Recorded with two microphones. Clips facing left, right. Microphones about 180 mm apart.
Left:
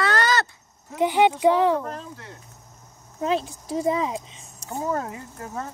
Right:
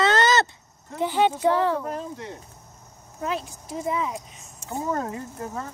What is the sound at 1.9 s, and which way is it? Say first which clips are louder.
Speech: right 4 dB; 15° right (ahead or behind).